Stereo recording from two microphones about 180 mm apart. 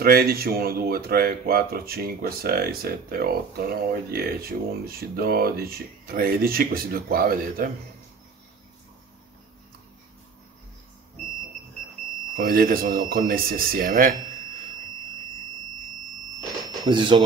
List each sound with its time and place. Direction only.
0.0 s speech: 55° right (ahead or behind)
12.4 s speech: 55° right (ahead or behind)
16.8 s speech: 25° right (ahead or behind)